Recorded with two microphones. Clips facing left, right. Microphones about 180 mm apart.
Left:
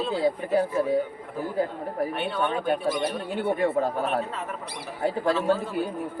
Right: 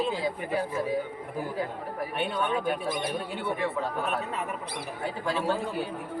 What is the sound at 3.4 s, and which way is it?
Speech, 50° left (ahead or behind).